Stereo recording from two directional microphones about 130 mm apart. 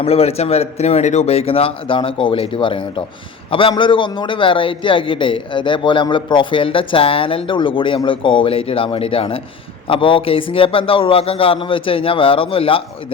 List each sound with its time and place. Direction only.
0.0 s a man's voice: 50° left (ahead or behind)